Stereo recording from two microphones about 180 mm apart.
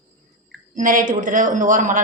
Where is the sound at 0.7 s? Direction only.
50° right (ahead or behind).